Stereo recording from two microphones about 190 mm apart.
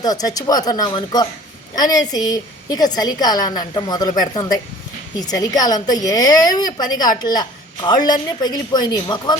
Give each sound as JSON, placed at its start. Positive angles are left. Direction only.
{"t": 0.0, "sound": "a woman's voice", "side_deg": 20}